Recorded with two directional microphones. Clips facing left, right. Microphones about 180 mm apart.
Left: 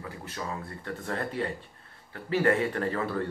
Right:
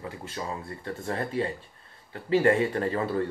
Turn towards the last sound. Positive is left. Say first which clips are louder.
# right 3 dB
turn(degrees=-25)  # may be behind; listen again after turning